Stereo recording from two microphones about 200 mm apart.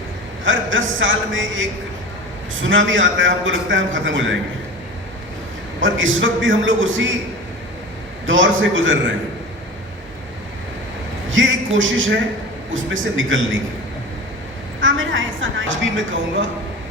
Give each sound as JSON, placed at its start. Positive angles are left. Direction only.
{"t": 0.4, "sound": "a man's voice", "side_deg": -75}
{"t": 5.8, "sound": "a man's voice", "side_deg": -75}
{"t": 8.3, "sound": "a man's voice", "side_deg": -70}
{"t": 11.3, "sound": "a man's voice", "side_deg": -75}
{"t": 14.8, "sound": "a man's voice", "side_deg": -70}